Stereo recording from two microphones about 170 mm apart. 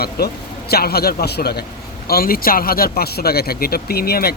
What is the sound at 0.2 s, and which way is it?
Speech, 65° left (ahead or behind).